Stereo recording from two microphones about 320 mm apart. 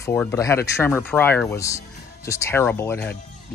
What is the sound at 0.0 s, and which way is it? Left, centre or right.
Speech, centre.